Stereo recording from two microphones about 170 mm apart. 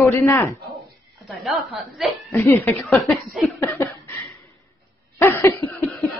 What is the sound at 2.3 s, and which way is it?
Speech, 15° left (ahead or behind).